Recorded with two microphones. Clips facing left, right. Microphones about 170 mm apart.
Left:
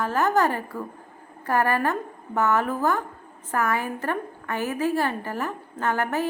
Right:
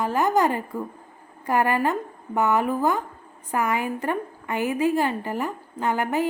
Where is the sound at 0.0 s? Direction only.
15° right (ahead or behind).